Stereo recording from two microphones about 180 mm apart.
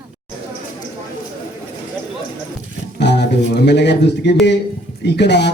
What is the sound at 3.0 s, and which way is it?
Speech, 70° left (ahead or behind).